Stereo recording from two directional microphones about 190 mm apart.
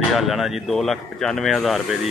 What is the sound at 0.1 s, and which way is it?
Speech, centre (ahead or behind).